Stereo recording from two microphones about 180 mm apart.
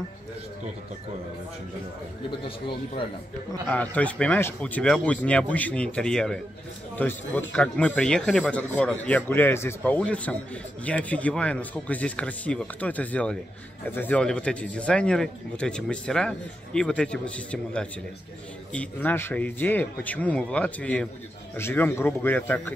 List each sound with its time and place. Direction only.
2.4 s speech: 30° left (ahead or behind)
3.6 s speech: 5° left (ahead or behind)